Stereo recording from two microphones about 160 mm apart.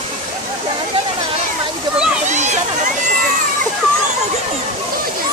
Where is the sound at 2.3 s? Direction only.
50° right (ahead or behind).